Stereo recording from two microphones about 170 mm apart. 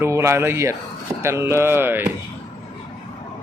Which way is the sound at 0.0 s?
15° right (ahead or behind).